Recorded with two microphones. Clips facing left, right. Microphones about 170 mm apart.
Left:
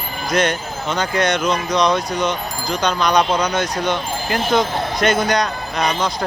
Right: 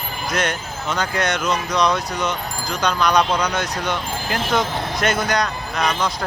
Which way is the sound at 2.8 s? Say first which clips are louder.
Left 1 dB; 5° right (ahead or behind).